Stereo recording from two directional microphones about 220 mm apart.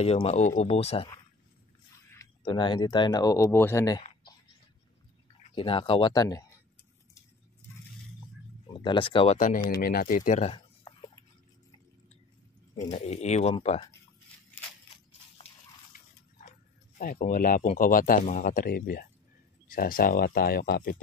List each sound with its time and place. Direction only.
0.0 s speech: 30° left (ahead or behind)
2.4 s speech: 20° left (ahead or behind)
5.5 s speech: 25° left (ahead or behind)
8.7 s speech: 25° left (ahead or behind)
10.8 s a sound: 15° left (ahead or behind)
12.8 s speech: 30° left (ahead or behind)
15.9 s dog: 35° left (ahead or behind)
17.0 s speech: 40° left (ahead or behind)